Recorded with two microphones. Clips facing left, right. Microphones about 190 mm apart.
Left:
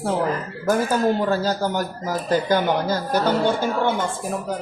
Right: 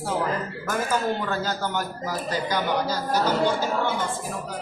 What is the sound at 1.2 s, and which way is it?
Speech, 35° left (ahead or behind).